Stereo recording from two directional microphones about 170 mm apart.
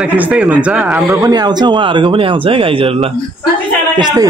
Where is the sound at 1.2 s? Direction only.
25° right (ahead or behind).